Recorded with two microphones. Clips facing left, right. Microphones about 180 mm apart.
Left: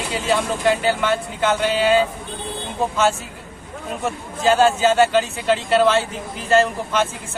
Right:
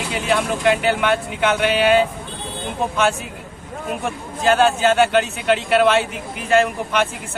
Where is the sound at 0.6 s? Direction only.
65° right (ahead or behind).